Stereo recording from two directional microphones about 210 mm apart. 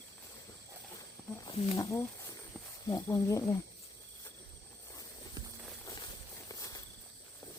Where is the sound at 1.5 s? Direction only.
20° left (ahead or behind).